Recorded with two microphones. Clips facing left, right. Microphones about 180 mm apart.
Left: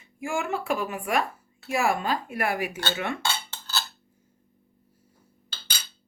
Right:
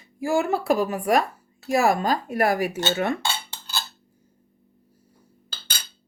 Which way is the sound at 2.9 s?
40° right (ahead or behind).